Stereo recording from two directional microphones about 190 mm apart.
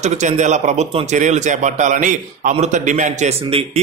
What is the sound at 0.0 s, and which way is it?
Speech, 40° right (ahead or behind).